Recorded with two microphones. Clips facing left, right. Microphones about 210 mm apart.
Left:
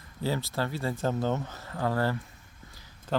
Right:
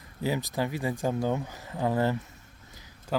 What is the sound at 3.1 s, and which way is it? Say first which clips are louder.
Speech: even; 5° right (ahead or behind).